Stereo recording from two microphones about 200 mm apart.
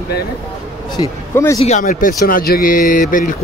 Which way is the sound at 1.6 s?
40° left (ahead or behind).